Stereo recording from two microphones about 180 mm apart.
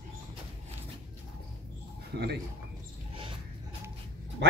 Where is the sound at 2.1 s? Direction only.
70° right (ahead or behind).